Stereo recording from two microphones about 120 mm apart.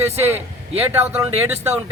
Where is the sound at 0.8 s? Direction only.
15° right (ahead or behind).